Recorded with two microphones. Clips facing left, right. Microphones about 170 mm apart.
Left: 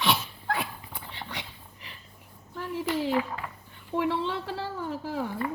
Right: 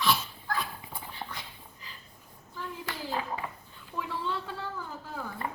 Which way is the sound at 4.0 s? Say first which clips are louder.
Left 6 dB; 80° left.